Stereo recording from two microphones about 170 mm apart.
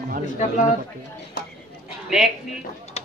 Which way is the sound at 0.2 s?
45° left (ahead or behind).